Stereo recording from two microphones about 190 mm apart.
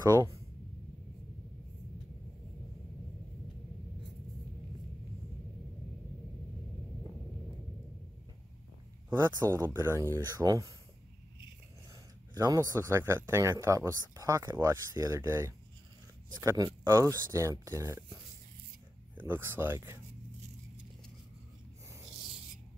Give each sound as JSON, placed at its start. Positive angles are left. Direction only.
{"t": 0.0, "sound": "speech", "side_deg": -20}
{"t": 9.1, "sound": "speech", "side_deg": -15}
{"t": 12.4, "sound": "speech", "side_deg": -15}